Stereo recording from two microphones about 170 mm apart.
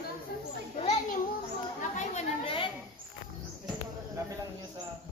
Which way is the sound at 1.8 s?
40° left (ahead or behind).